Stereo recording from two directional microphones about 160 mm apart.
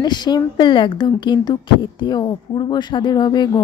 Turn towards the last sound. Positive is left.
turn(degrees=25)  # may be behind; listen again after turning